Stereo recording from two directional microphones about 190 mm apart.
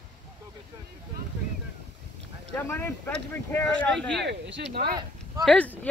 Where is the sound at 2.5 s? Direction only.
10° left (ahead or behind).